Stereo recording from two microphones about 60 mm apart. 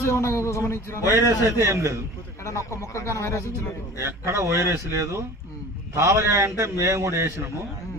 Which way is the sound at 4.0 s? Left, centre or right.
Right.